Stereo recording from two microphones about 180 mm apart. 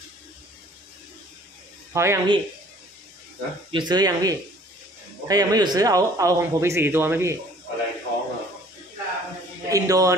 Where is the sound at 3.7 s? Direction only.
25° right (ahead or behind).